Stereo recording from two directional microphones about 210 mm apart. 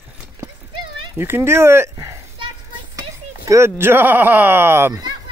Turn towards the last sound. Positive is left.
turn(degrees=-15)  # may be behind; listen again after turning